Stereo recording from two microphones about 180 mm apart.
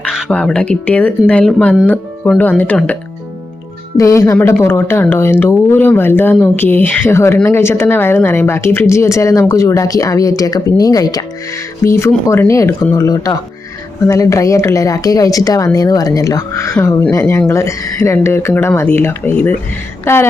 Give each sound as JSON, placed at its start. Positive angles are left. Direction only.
{"t": 0.1, "sound": "speech", "side_deg": 5}